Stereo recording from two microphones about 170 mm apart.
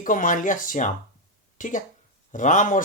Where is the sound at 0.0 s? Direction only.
50° left (ahead or behind).